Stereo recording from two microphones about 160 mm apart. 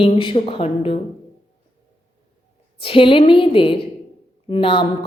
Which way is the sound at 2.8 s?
35° left (ahead or behind).